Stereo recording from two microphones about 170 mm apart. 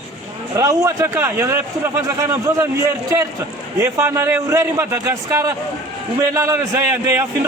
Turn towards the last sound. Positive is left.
turn(degrees=-15)  # may be behind; listen again after turning